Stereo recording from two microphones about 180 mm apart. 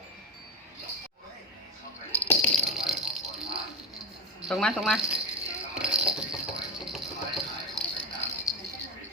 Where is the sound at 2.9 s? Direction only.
Centre (ahead or behind).